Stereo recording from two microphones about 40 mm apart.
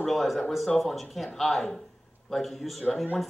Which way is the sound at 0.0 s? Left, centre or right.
Centre.